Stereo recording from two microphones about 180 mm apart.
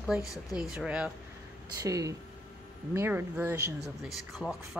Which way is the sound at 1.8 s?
20° right (ahead or behind).